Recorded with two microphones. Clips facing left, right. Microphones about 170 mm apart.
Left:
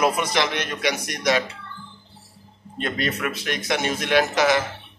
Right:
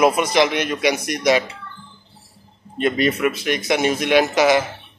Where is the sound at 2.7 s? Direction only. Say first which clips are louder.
Right 7 dB; 15° right (ahead or behind).